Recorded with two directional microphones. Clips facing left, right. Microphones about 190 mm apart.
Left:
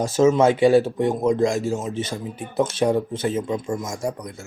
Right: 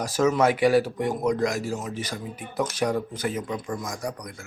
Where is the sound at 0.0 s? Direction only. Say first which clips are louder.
Left 5 dB; 25° left (ahead or behind).